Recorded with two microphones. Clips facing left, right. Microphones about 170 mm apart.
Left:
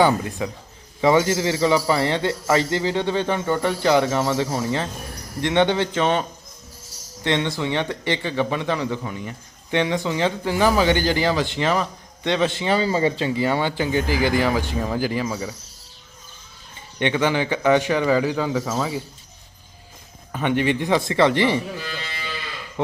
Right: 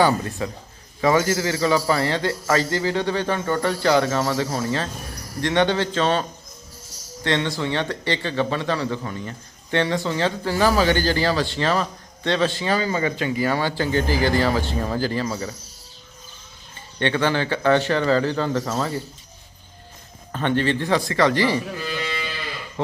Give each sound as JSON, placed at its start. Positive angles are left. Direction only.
{"t": 0.0, "sound": "a man's voice", "side_deg": 15}
{"t": 7.3, "sound": "speech", "side_deg": 15}
{"t": 17.0, "sound": "speech", "side_deg": 15}
{"t": 20.3, "sound": "a man's voice", "side_deg": 10}